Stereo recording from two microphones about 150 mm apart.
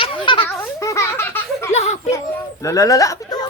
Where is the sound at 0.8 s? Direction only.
20° left (ahead or behind).